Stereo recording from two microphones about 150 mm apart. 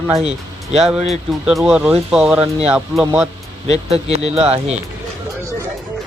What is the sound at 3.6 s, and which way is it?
Speech, 45° right (ahead or behind).